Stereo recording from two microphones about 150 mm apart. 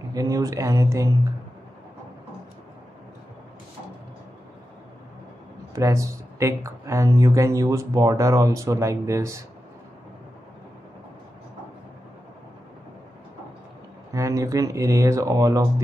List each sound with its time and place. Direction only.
0.1 s speech: 20° right (ahead or behind)
5.8 s speech: 20° right (ahead or behind)
14.1 s speech: 20° right (ahead or behind)